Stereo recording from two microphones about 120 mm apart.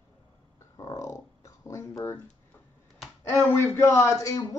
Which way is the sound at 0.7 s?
25° left (ahead or behind).